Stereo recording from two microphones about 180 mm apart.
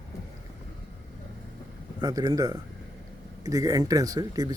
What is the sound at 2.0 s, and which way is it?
Speech, 20° right (ahead or behind).